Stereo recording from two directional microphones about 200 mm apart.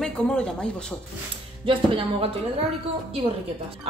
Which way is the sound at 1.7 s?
25° right (ahead or behind).